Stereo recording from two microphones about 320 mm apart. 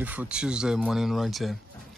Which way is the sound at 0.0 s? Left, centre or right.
Centre.